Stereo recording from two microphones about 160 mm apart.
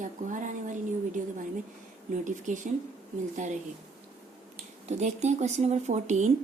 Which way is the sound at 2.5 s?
50° right (ahead or behind).